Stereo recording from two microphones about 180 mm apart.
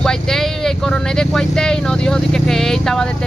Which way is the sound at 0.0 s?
5° left (ahead or behind).